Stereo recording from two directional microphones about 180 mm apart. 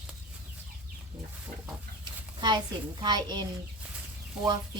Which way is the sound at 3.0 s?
25° right (ahead or behind).